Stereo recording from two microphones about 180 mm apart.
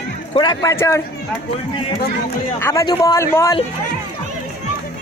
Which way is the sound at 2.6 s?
15° left (ahead or behind).